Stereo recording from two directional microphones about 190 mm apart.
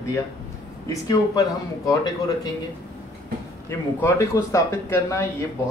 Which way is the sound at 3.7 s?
15° left (ahead or behind).